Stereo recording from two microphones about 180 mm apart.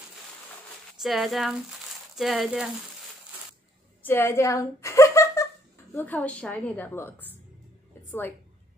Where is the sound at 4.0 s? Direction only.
10° left (ahead or behind).